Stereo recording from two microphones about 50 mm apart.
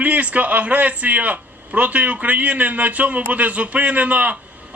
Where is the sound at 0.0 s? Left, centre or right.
Right.